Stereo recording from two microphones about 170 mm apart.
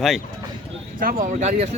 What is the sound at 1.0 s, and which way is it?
Speech, 55° right (ahead or behind).